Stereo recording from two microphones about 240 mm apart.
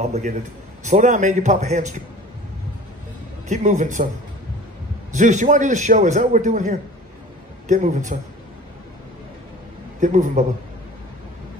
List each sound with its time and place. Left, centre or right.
0.0 s a man's voice: right
3.4 s a man's voice: right
5.1 s a man's voice: right
9.9 s a man's voice: right